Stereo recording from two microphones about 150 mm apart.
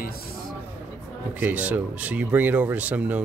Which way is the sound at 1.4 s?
10° right (ahead or behind).